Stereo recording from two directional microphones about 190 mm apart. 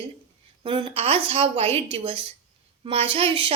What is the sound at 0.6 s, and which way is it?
A woman's voice, 25° right (ahead or behind).